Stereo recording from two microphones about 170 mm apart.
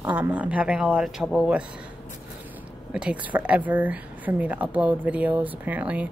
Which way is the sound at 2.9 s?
5° right (ahead or behind).